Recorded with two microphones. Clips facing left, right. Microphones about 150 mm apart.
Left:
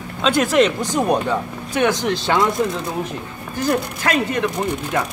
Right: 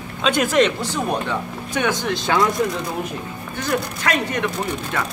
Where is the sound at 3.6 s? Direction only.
30° left (ahead or behind).